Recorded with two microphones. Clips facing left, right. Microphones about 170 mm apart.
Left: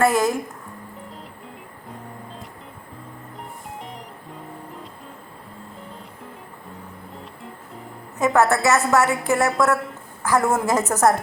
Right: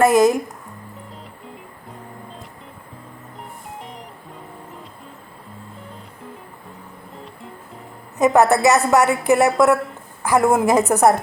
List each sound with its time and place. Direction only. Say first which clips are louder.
0.0 s a woman's voice: right 5 dB; 20° right (ahead or behind)
8.2 s a woman's voice: right 4 dB; 15° right (ahead or behind)